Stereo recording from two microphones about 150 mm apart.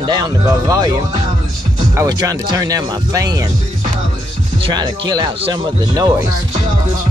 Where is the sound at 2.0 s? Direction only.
25° right (ahead or behind).